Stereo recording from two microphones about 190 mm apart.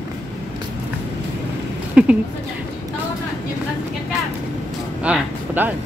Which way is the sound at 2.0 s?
5° right (ahead or behind).